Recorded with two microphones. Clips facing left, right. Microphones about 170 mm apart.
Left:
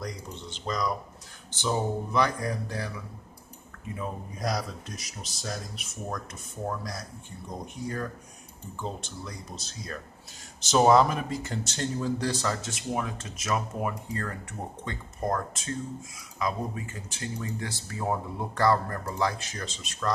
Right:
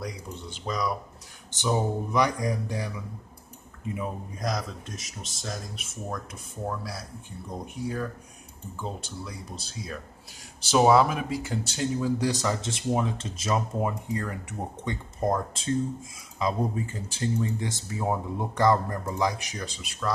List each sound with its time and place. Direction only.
0.0 s speech: 10° right (ahead or behind)
4.4 s speech: centre (ahead or behind); by 12.7 s 15° right (ahead or behind)
12.7 s speech: 25° right (ahead or behind); by 20.1 s 10° right (ahead or behind)